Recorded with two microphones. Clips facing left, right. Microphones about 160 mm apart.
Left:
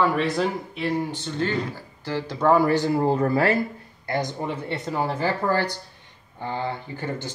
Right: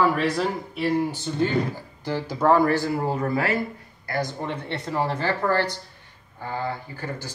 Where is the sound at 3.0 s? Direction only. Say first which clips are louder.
Left 4 dB; 35° left (ahead or behind).